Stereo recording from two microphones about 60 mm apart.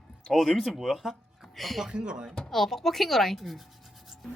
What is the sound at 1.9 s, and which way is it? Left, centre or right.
Speech, centre.